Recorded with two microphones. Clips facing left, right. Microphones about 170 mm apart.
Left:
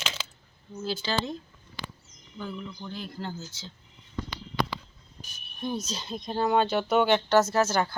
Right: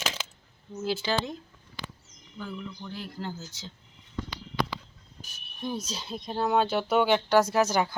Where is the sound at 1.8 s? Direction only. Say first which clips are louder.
Left 1 dB; 40° left (ahead or behind).